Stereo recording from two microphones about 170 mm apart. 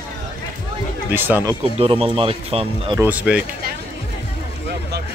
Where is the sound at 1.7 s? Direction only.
35° right (ahead or behind).